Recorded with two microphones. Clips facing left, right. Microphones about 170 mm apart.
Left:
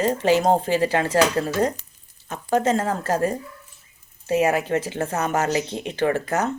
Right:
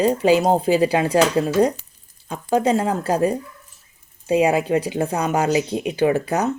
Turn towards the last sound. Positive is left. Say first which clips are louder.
# right 3 dB
turn(degrees=-10)  # may be behind; listen again after turning